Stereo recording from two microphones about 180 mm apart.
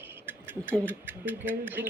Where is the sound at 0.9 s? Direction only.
10° right (ahead or behind).